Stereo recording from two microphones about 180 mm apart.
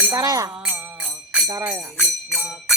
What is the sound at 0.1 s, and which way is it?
Music, 20° right (ahead or behind).